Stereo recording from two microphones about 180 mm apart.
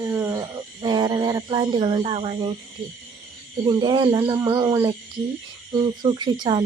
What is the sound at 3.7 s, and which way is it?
Speech, 25° right (ahead or behind).